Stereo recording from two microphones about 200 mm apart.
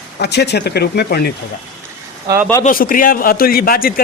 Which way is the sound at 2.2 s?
15° right (ahead or behind).